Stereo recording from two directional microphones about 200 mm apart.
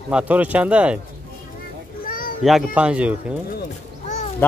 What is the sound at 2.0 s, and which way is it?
Children playing, 45° left (ahead or behind).